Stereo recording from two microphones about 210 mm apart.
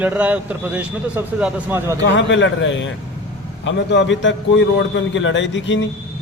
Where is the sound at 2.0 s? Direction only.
60° left (ahead or behind).